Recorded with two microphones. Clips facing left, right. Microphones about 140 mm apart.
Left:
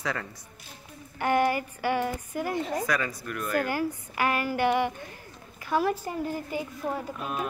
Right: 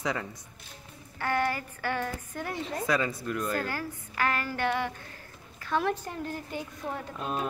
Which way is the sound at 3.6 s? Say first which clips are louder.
Left 6 dB; 15° left (ahead or behind).